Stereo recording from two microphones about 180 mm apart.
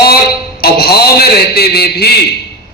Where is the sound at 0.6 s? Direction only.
60° left (ahead or behind).